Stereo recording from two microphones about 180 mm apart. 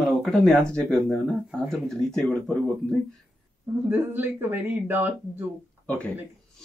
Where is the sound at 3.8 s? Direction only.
10° right (ahead or behind).